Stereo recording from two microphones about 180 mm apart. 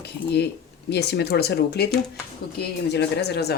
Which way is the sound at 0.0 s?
65° left (ahead or behind).